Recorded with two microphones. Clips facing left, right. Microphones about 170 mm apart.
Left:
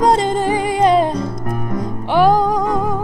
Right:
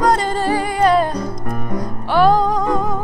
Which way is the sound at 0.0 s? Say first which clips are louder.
Left 2 dB; 20° left (ahead or behind).